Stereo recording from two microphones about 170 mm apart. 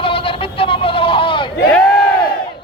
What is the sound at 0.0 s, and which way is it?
Vehicle, 30° left (ahead or behind).